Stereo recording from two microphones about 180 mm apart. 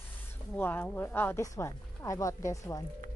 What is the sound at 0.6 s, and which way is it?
Speech, 10° left (ahead or behind).